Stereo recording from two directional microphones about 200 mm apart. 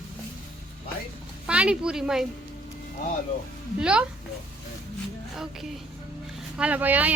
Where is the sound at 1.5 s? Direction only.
5° right (ahead or behind).